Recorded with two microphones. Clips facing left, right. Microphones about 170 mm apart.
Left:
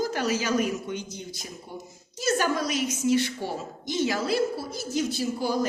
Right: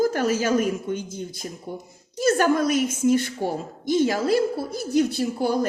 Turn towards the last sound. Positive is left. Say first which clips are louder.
# right 4 dB
turn(degrees=-60)  # may be behind; listen again after turning